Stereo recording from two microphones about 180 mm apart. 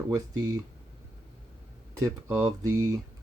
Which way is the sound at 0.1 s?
20° right (ahead or behind).